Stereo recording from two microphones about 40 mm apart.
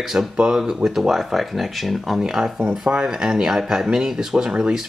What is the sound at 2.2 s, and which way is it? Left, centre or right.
Speech, centre.